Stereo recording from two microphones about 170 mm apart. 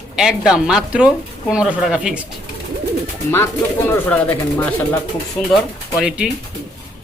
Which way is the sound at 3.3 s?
15° left (ahead or behind).